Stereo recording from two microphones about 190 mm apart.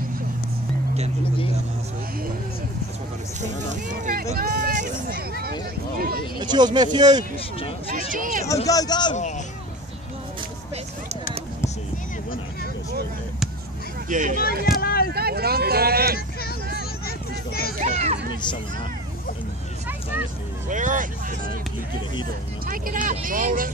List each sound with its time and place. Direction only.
4.0 s speech: 50° right (ahead or behind)
5.9 s speech: 50° right (ahead or behind)
6.4 s speech: 20° right (ahead or behind)
7.9 s speech: 45° right (ahead or behind)
8.6 s a man's voice: 20° left (ahead or behind)
14.0 s speech: 40° right (ahead or behind)
14.8 s vehicle: 50° left (ahead or behind)
15.1 s speech: 55° right (ahead or behind)
17.0 s vehicle: 55° left (ahead or behind)
17.7 s a sound: 40° right (ahead or behind)
20.6 s speech: 40° right (ahead or behind)
22.7 s speech: 45° right (ahead or behind)